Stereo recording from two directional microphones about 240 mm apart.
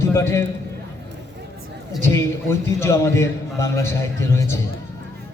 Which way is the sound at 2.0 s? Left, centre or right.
Centre.